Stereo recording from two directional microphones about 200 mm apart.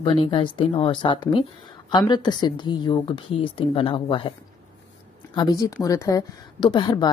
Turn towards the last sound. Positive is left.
turn(degrees=20)  # may be behind; listen again after turning